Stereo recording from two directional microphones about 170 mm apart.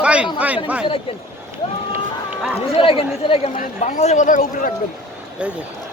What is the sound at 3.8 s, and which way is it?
Speech, 45° left (ahead or behind).